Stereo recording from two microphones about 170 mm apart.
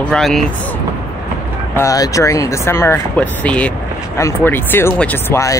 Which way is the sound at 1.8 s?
20° left (ahead or behind).